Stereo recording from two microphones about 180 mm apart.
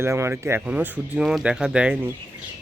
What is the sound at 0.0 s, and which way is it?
A man's voice, 15° right (ahead or behind).